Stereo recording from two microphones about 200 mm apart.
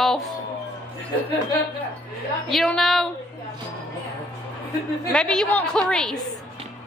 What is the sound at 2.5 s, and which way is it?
Speech, centre (ahead or behind).